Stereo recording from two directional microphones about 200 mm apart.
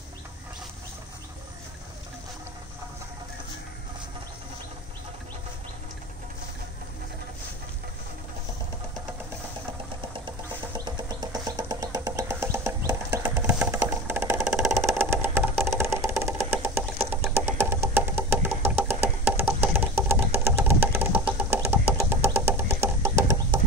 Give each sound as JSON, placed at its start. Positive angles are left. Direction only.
{"t": 10.9, "sound": "music", "side_deg": -20}
{"t": 14.9, "sound": "vehicle", "side_deg": -10}
{"t": 15.6, "sound": "music", "side_deg": -15}
{"t": 17.3, "sound": "a sound", "side_deg": -10}
{"t": 22.4, "sound": "music", "side_deg": -10}
{"t": 23.0, "sound": "a sound", "side_deg": -15}